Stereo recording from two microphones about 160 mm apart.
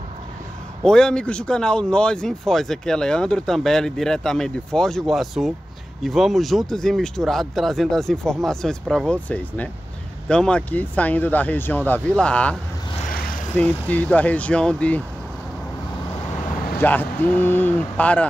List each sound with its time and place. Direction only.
0.8 s speech: 5° left (ahead or behind)
13.1 s vehicle: 65° left (ahead or behind)
13.5 s speech: 10° left (ahead or behind)
16.8 s speech: 10° left (ahead or behind)